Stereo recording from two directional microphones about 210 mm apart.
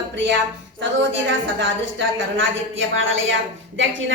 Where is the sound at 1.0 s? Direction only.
60° right (ahead or behind).